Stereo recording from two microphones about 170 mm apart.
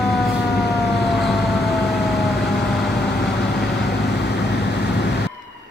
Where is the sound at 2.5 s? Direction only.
75° left (ahead or behind).